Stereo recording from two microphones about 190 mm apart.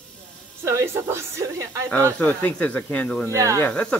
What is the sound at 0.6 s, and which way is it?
A woman's voice, 15° right (ahead or behind).